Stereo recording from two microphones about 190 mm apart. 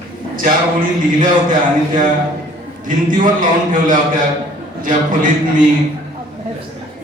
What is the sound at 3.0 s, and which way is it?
A man's voice, 45° right (ahead or behind).